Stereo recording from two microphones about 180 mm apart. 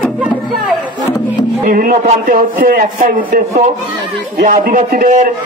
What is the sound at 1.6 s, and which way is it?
A man's voice, 50° right (ahead or behind).